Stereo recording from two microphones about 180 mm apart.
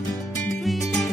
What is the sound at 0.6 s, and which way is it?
Music, centre (ahead or behind).